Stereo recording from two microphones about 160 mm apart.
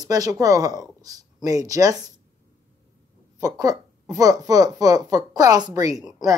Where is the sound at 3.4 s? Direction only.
20° right (ahead or behind).